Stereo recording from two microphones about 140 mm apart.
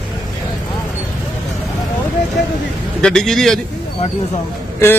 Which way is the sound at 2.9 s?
5° left (ahead or behind).